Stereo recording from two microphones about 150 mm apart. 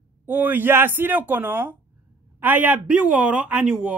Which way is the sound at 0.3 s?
15° right (ahead or behind).